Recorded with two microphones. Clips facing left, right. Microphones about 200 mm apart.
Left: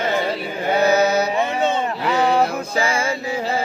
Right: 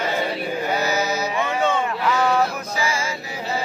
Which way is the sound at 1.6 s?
25° left (ahead or behind).